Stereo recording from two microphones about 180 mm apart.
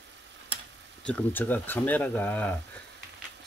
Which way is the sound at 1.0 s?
5° left (ahead or behind).